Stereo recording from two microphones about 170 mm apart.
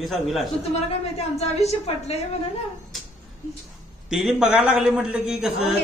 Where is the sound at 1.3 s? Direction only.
40° left (ahead or behind).